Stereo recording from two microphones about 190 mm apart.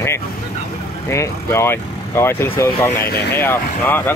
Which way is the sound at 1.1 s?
15° left (ahead or behind).